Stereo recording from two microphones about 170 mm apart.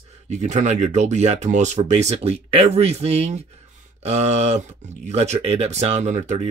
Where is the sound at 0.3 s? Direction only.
45° right (ahead or behind).